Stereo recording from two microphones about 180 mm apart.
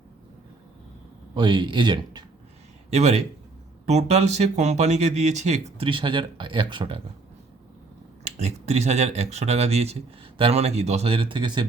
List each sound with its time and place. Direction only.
1.4 s speech: 25° right (ahead or behind)
2.9 s speech: 40° right (ahead or behind)
8.2 s speech: 35° right (ahead or behind)